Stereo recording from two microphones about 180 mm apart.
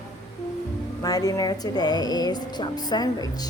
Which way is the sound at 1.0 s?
20° left (ahead or behind).